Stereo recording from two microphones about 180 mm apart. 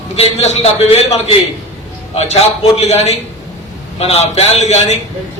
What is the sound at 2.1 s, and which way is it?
A man's voice, 35° left (ahead or behind).